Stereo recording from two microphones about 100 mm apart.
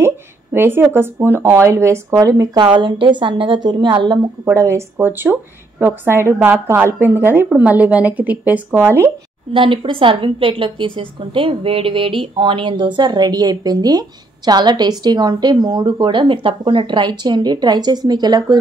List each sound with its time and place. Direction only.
0.0 s speech: 20° right (ahead or behind)
2.8 s a woman's voice: 50° right (ahead or behind)
4.6 s speech: 30° right (ahead or behind)
9.5 s a woman's voice: 60° right (ahead or behind); by 18.6 s 45° right (ahead or behind)